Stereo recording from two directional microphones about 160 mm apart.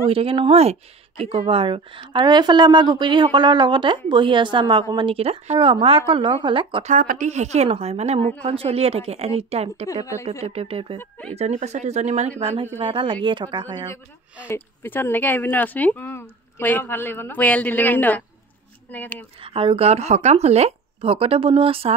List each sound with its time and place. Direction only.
0.0 s a woman's voice: 35° right (ahead or behind)
6.9 s a woman's voice: 55° right (ahead or behind); by 11.0 s 35° right (ahead or behind)
11.0 s speech: 10° left (ahead or behind)
11.3 s a woman's voice: 45° right (ahead or behind); by 13.7 s 30° right (ahead or behind)
14.5 s speech: 15° left (ahead or behind)
19.4 s a woman's voice: 35° right (ahead or behind)